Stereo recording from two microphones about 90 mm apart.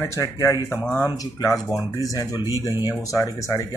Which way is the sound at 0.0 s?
35° left (ahead or behind).